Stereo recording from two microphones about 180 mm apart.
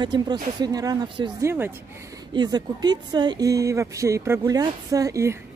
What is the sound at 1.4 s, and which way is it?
Speech, 15° right (ahead or behind).